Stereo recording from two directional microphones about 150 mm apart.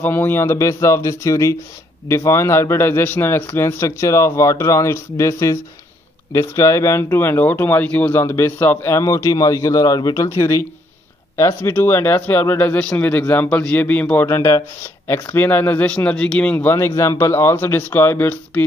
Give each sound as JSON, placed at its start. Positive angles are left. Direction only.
{"t": 0.0, "sound": "speech", "side_deg": 15}